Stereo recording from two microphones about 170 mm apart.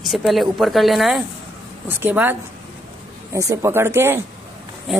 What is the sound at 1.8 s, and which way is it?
Speech, 10° right (ahead or behind).